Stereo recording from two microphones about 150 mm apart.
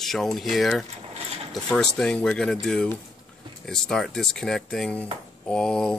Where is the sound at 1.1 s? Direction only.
40° right (ahead or behind).